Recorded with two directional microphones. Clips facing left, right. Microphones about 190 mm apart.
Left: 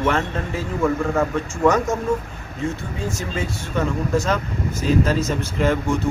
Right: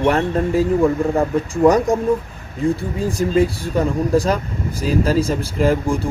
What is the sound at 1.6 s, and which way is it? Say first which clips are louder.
A man's voice: right 4 dB; 35° right (ahead or behind).